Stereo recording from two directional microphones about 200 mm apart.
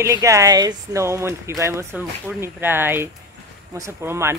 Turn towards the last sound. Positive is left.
turn(degrees=-15)  # may be behind; listen again after turning